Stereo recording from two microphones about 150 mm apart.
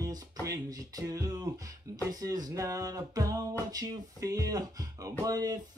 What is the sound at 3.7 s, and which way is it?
Music, 25° right (ahead or behind).